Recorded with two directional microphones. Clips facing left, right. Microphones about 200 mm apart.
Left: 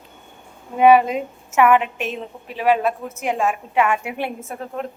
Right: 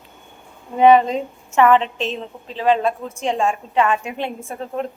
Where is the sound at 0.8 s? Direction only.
10° left (ahead or behind).